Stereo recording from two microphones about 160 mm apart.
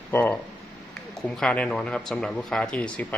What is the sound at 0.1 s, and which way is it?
Speech, 10° left (ahead or behind).